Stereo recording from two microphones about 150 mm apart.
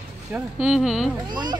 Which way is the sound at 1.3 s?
30° right (ahead or behind).